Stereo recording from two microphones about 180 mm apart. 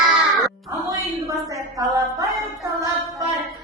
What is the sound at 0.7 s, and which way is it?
Speech, 20° right (ahead or behind).